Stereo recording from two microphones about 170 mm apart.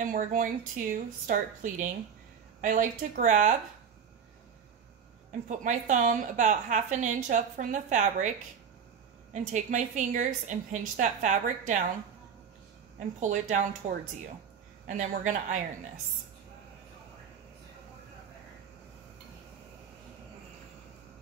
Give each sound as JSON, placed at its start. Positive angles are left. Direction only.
{"t": 0.0, "sound": "a woman's voice", "side_deg": -50}
{"t": 5.5, "sound": "a woman's voice", "side_deg": -45}
{"t": 9.3, "sound": "a woman's voice", "side_deg": -45}
{"t": 13.2, "sound": "a woman's voice", "side_deg": -45}